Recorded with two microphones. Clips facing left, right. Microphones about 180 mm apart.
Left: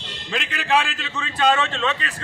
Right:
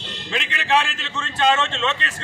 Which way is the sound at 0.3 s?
Centre (ahead or behind).